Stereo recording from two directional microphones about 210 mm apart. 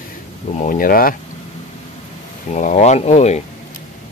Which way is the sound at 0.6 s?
40° left (ahead or behind).